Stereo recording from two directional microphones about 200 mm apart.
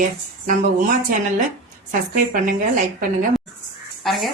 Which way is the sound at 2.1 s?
40° right (ahead or behind).